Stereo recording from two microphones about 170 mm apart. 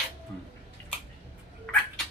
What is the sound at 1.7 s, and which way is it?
Cat, 5° left (ahead or behind).